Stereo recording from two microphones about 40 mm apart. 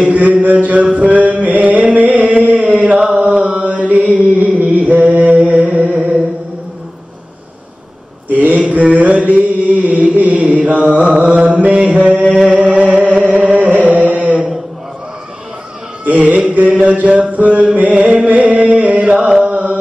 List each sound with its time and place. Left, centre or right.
0.0 s a sound: right
0.9 s music: right
3.2 s mantra: right
4.4 s music: right
8.3 s mantra: right
12.4 s music: right
16.1 s mantra: right
19.1 s chant: centre
19.4 s carnatic music: right